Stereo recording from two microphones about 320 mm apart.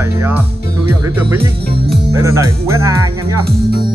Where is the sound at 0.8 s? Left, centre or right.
Centre.